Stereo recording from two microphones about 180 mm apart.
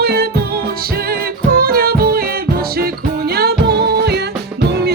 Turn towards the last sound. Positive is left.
turn(degrees=-65)  # may be behind; listen again after turning